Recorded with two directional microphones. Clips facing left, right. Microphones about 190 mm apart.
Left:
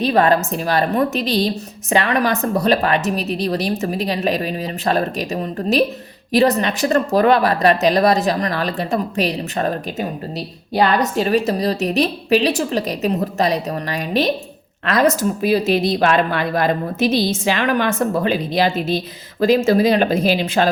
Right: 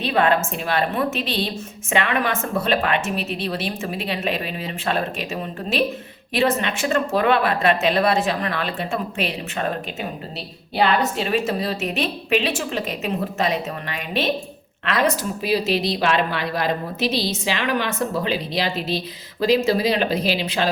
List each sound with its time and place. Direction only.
0.0 s a woman's voice: 40° left (ahead or behind)